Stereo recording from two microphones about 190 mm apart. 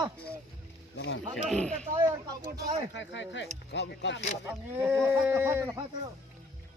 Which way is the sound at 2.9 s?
70° left (ahead or behind).